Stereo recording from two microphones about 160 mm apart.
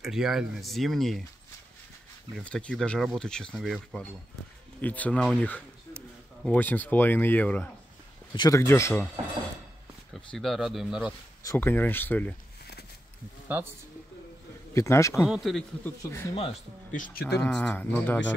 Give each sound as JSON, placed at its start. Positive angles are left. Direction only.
{"t": 0.0, "sound": "speech", "side_deg": -5}
{"t": 2.3, "sound": "speech", "side_deg": 5}
{"t": 8.3, "sound": "speech", "side_deg": 20}
{"t": 10.1, "sound": "speech", "side_deg": 0}
{"t": 11.4, "sound": "speech", "side_deg": 15}
{"t": 13.5, "sound": "speech", "side_deg": -15}
{"t": 14.7, "sound": "speech", "side_deg": 20}
{"t": 15.2, "sound": "speech", "side_deg": 0}
{"t": 16.0, "sound": "speech", "side_deg": 20}
{"t": 16.9, "sound": "speech", "side_deg": 55}
{"t": 17.4, "sound": "speech", "side_deg": 5}